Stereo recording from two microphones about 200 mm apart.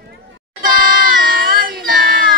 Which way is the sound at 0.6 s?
45° right (ahead or behind).